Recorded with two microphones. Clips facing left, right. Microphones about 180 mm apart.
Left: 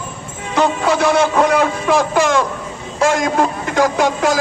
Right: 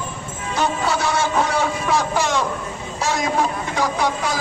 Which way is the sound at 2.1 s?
90° left.